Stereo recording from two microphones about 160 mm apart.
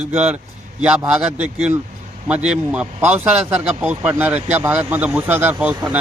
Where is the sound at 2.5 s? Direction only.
10° right (ahead or behind).